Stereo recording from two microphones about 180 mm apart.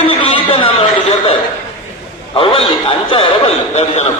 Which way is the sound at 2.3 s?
30° left (ahead or behind).